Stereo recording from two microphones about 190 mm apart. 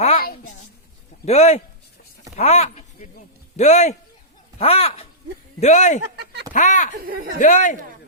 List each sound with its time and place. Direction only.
0.2 s a woman's voice: 45° left (ahead or behind)
1.2 s speech: 35° left (ahead or behind)
7.0 s speech: 50° right (ahead or behind)
7.3 s speech: 40° left (ahead or behind)